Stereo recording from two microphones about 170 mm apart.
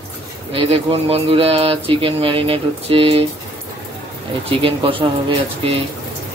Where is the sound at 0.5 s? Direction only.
35° right (ahead or behind).